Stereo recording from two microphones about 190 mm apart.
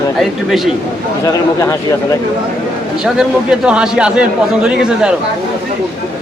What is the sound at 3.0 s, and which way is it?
A man's voice, 5° right (ahead or behind).